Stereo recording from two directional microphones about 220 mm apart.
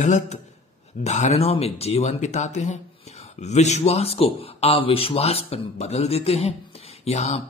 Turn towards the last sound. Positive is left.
turn(degrees=30)  # may be behind; listen again after turning